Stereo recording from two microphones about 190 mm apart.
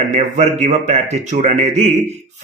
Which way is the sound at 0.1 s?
35° right (ahead or behind).